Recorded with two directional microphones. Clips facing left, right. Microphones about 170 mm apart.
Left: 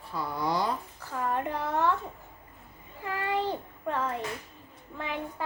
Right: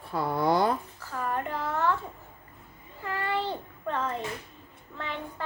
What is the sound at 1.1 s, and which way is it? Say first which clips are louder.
Speech: left 1 dB; 20° left (ahead or behind).